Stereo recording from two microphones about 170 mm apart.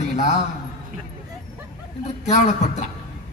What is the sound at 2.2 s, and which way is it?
Speech, 45° left (ahead or behind).